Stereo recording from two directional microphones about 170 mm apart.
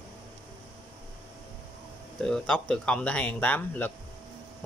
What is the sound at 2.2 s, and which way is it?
Speech, 5° left (ahead or behind).